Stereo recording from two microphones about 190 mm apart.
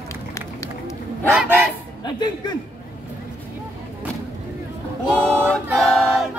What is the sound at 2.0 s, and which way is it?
Chuckle, 20° left (ahead or behind).